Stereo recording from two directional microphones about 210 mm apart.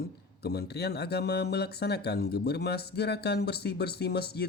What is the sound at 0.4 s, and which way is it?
Speech, 50° left (ahead or behind).